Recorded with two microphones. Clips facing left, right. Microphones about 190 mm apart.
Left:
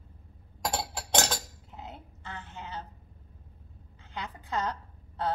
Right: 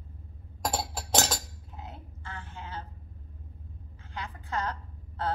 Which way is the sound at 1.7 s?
20° left (ahead or behind).